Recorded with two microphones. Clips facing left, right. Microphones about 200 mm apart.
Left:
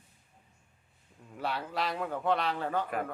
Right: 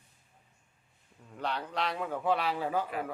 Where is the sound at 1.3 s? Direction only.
5° left (ahead or behind).